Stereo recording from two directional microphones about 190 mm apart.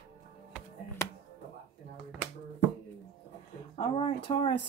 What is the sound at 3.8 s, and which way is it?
Speech, 25° left (ahead or behind).